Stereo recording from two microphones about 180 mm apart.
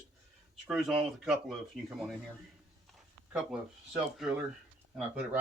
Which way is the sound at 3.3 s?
5° right (ahead or behind).